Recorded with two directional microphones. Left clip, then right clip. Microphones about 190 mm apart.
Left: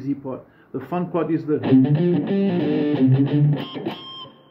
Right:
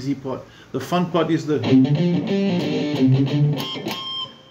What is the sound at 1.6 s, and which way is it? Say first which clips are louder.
Music: left 2 dB; 45° left (ahead or behind).